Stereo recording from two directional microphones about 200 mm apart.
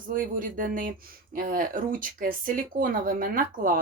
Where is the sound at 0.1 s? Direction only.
45° right (ahead or behind).